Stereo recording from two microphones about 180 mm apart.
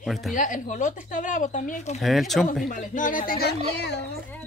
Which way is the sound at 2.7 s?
45° left (ahead or behind).